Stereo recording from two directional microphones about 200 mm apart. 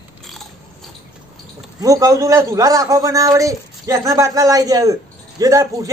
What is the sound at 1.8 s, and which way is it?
A man's voice, 15° right (ahead or behind).